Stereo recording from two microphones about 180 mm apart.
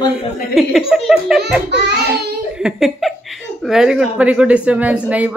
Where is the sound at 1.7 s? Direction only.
70° right (ahead or behind).